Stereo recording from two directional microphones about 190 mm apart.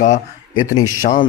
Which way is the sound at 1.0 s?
45° left (ahead or behind).